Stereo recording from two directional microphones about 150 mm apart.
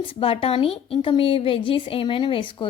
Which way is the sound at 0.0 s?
35° left (ahead or behind).